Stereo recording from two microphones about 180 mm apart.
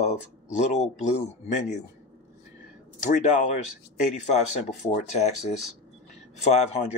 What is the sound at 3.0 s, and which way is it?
Speech, 45° left (ahead or behind).